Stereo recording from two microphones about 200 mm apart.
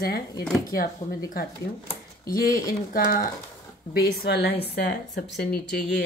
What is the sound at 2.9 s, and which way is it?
A woman's voice, 45° left (ahead or behind).